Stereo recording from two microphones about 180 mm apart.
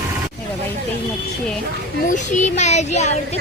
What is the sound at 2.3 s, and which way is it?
Child singing, 40° left (ahead or behind).